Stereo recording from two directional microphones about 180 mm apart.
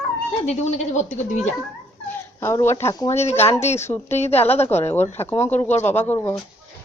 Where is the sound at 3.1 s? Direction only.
35° left (ahead or behind).